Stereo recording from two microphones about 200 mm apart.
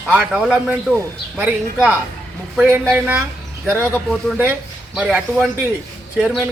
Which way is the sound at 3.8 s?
10° left (ahead or behind).